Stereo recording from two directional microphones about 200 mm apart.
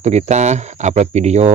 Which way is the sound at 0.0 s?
35° right (ahead or behind).